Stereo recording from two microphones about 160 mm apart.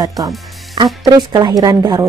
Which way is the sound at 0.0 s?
20° right (ahead or behind).